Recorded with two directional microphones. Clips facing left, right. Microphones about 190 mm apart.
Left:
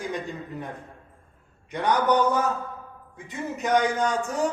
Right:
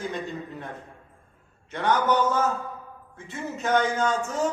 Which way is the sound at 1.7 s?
15° left (ahead or behind).